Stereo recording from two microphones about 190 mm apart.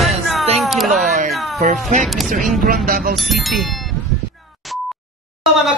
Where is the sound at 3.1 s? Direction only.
Centre (ahead or behind).